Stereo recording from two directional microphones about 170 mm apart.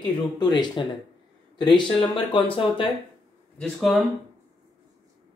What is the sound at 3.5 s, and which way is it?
Speech, centre (ahead or behind).